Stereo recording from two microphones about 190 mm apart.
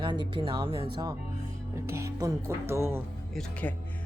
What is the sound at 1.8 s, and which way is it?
Music, 15° right (ahead or behind).